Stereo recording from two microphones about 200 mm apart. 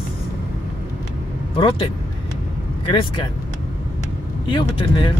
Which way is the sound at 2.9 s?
25° left (ahead or behind).